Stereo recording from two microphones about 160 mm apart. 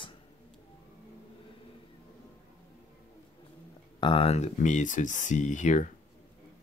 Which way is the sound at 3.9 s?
35° left (ahead or behind).